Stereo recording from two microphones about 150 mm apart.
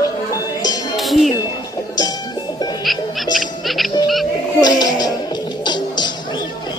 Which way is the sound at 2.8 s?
Centre (ahead or behind).